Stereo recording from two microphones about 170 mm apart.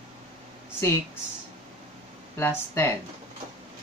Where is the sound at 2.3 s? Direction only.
15° left (ahead or behind).